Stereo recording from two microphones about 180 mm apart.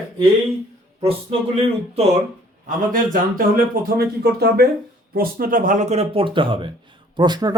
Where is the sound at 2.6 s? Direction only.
45° right (ahead or behind).